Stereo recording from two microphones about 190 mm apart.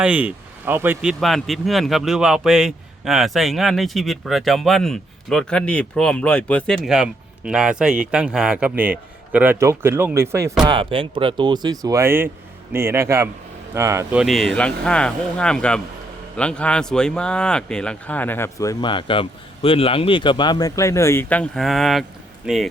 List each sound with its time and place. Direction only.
0.0 s speech: 5° right (ahead or behind)
1.2 s a man's voice: centre (ahead or behind)
10.7 s a man's voice: 25° right (ahead or behind)
14.2 s speech: centre (ahead or behind)